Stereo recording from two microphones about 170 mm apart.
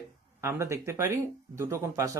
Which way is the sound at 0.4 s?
15° right (ahead or behind).